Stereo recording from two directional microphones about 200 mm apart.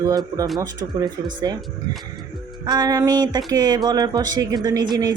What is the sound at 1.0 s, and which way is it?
Speech, 20° right (ahead or behind).